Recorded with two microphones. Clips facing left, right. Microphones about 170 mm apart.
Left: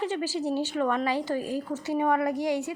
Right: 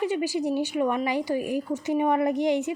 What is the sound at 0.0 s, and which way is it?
A woman's voice, 15° right (ahead or behind).